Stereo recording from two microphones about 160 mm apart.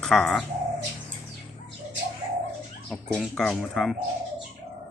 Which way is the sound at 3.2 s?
5° left (ahead or behind).